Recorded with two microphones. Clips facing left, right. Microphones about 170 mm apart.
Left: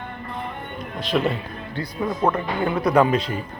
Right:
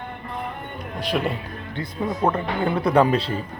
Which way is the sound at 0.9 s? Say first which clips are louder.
Left 2 dB; 10° right (ahead or behind).